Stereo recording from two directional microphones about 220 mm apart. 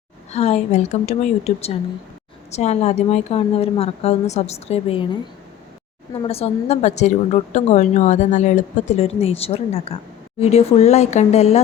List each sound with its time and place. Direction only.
0.3 s a woman's voice: 30° left (ahead or behind)
6.2 s a woman's voice: 25° left (ahead or behind)